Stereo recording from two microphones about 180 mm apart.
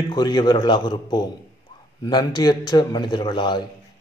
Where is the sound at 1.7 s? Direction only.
20° left (ahead or behind).